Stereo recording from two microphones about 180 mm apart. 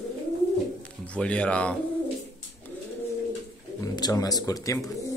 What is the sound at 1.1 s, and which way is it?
Speech, 5° left (ahead or behind).